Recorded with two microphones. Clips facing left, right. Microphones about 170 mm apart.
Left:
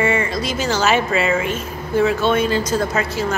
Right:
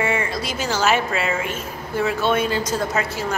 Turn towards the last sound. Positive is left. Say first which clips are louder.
# left 3 dB
turn(degrees=-10)  # may be behind; listen again after turning